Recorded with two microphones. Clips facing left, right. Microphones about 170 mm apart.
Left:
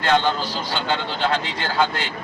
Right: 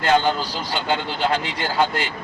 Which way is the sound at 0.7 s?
10° right (ahead or behind).